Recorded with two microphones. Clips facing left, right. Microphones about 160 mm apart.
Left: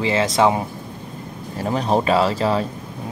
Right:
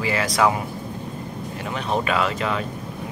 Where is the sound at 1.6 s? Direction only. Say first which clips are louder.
Left 6 dB; 35° left (ahead or behind).